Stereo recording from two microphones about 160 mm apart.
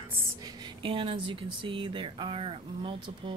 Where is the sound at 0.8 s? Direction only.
35° right (ahead or behind).